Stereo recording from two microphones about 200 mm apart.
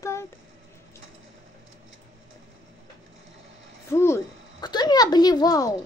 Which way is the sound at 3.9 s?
15° left (ahead or behind).